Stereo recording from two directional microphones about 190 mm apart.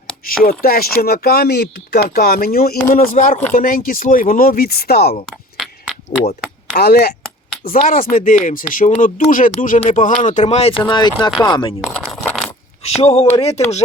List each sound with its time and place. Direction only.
0.3 s speech: 50° left (ahead or behind)
6.7 s speech: 55° left (ahead or behind); by 11.7 s 25° left (ahead or behind)
11.9 s coin: 10° left (ahead or behind)
12.8 s speech: 35° left (ahead or behind)